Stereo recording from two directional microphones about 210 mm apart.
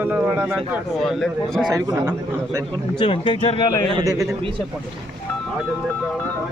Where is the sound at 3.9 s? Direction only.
15° right (ahead or behind).